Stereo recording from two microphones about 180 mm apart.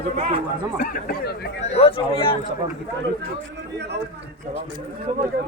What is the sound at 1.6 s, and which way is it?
Speech, 35° left (ahead or behind).